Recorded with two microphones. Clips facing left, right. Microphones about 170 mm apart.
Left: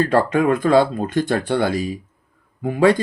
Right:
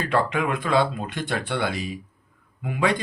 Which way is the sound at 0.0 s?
40° left (ahead or behind).